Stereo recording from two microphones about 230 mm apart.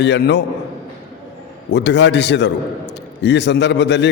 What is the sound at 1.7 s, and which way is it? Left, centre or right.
A man's voice, left.